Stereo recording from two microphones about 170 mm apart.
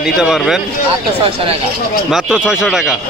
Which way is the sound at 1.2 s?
35° right (ahead or behind).